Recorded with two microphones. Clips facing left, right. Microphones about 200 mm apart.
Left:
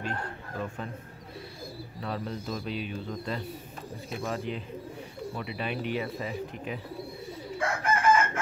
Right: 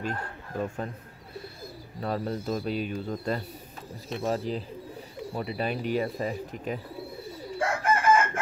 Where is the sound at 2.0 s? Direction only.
40° right (ahead or behind).